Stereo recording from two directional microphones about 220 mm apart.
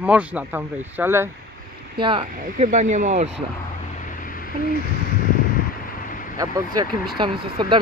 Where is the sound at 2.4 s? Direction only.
35° right (ahead or behind).